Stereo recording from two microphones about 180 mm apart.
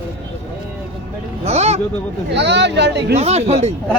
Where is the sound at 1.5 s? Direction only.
35° right (ahead or behind).